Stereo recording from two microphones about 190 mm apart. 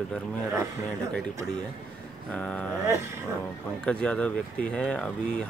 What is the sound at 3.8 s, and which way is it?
Speech, 5° left (ahead or behind).